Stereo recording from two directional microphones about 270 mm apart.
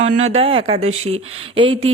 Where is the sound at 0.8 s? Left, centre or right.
Right.